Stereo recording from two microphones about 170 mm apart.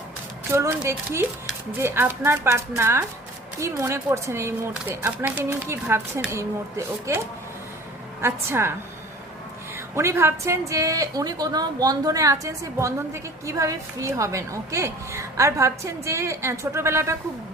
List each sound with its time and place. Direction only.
0.5 s a woman's voice: 15° right (ahead or behind)
8.2 s a woman's voice: 15° right (ahead or behind)
9.7 s a woman's voice: 15° right (ahead or behind)